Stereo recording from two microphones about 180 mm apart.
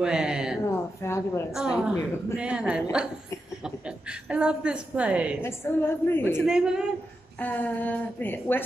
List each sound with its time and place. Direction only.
0.0 s a woman's voice: 5° right (ahead or behind)
0.7 s a woman's voice: 15° left (ahead or behind)
1.5 s a woman's voice: 5° right (ahead or behind)
5.4 s a woman's voice: 15° left (ahead or behind)
6.4 s a woman's voice: 5° right (ahead or behind)
7.3 s a woman's voice: 10° left (ahead or behind)